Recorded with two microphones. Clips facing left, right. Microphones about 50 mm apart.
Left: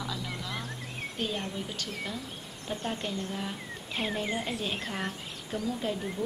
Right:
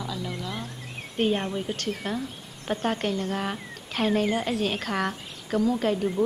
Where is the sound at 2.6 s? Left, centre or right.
Right.